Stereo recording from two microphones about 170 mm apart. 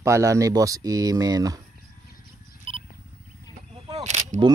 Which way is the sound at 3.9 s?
45° right (ahead or behind).